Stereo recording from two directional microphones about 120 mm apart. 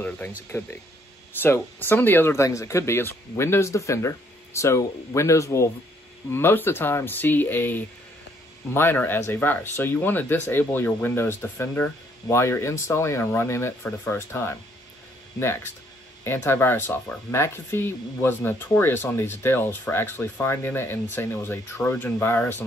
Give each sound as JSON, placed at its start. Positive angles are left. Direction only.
{"t": 0.5, "sound": "speech", "side_deg": 20}